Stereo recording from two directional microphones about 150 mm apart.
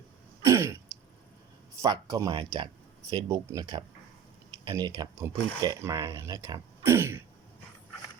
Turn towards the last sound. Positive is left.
turn(degrees=-15)  # may be behind; listen again after turning